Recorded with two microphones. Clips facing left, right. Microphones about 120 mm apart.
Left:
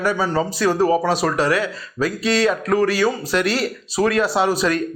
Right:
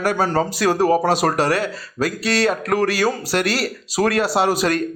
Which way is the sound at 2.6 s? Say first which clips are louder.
Left 1 dB; 55° right (ahead or behind).